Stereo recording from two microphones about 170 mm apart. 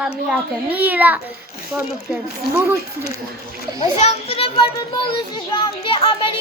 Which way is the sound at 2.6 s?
10° right (ahead or behind).